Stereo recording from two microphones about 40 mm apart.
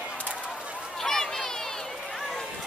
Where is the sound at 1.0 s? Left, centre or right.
Centre.